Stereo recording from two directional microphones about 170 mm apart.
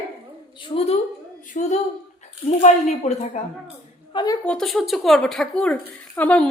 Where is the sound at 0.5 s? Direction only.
30° left (ahead or behind).